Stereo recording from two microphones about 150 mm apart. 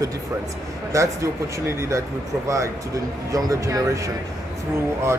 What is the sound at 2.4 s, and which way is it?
Speech, 20° right (ahead or behind).